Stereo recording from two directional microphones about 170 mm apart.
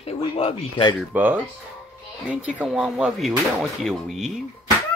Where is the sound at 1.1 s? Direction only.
10° right (ahead or behind).